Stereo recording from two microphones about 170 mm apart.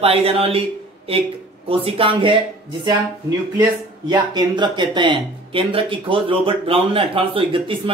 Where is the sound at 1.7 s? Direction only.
35° right (ahead or behind).